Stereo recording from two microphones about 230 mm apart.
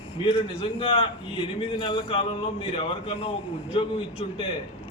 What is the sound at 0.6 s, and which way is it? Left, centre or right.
A man's voice, left.